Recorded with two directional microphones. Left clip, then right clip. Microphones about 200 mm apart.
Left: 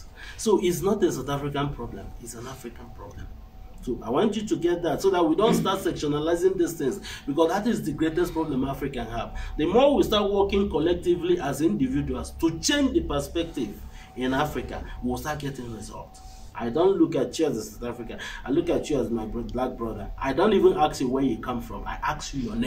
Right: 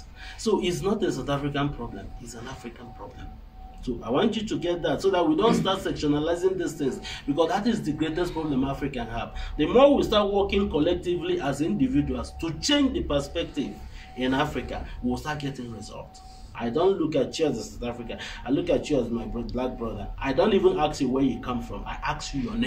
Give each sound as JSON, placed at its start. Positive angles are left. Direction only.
{"t": 0.4, "sound": "a man's voice", "side_deg": 15}
{"t": 3.8, "sound": "a man's voice", "side_deg": 15}
{"t": 16.5, "sound": "a man's voice", "side_deg": 15}
{"t": 20.2, "sound": "a man's voice", "side_deg": 15}